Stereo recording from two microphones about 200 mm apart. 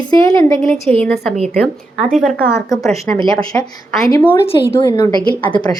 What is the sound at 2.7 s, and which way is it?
Speech, centre (ahead or behind).